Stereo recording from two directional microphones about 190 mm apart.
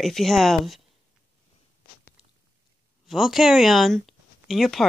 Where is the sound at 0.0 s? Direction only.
Centre (ahead or behind).